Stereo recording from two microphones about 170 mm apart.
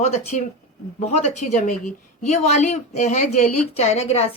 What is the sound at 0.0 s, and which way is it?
A woman's voice, 45° left (ahead or behind).